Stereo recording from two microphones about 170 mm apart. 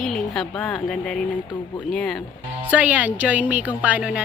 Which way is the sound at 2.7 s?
10° right (ahead or behind).